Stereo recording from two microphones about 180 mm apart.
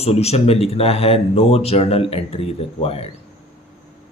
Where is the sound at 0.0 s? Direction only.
35° left (ahead or behind).